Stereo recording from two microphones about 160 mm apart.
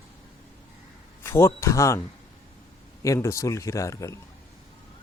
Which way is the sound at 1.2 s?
15° left (ahead or behind).